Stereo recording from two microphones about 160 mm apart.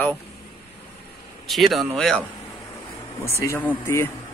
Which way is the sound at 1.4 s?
Centre (ahead or behind).